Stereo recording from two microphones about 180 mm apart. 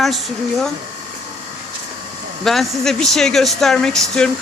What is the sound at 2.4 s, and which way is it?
A man's voice, centre (ahead or behind).